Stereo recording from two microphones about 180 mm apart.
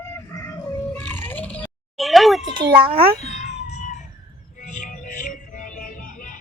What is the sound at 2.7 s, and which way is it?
Speech, 30° right (ahead or behind).